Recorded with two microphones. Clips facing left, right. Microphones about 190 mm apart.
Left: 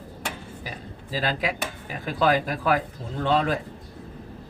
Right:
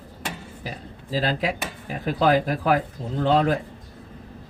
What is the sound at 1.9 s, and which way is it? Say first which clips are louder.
Speech: right 2 dB; 45° right (ahead or behind).